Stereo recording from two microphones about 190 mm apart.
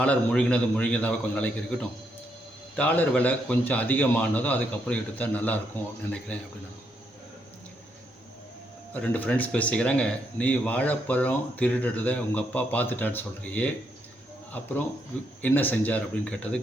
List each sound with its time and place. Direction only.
0.0 s speech: 5° left (ahead or behind)
2.7 s speech: 10° left (ahead or behind)
8.9 s speech: 10° left (ahead or behind)
15.4 s speech: 10° left (ahead or behind)